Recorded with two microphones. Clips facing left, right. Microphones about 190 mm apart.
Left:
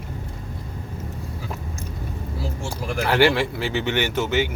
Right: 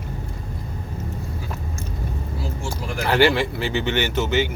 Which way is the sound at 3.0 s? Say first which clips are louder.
Even; 10° left (ahead or behind).